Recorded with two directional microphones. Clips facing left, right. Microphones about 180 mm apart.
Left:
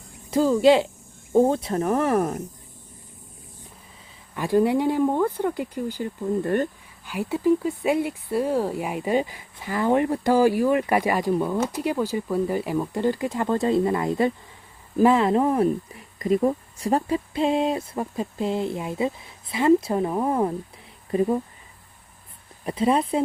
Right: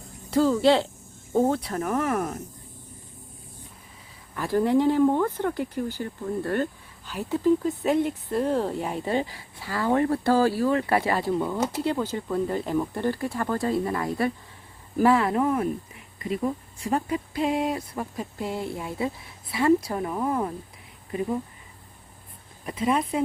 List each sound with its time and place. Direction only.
0.3 s speech: 15° left (ahead or behind); by 2.4 s 30° left (ahead or behind)
4.4 s speech: 15° left (ahead or behind); by 15.7 s 35° left (ahead or behind)
16.1 s speech: 45° left (ahead or behind)
22.6 s speech: 30° left (ahead or behind)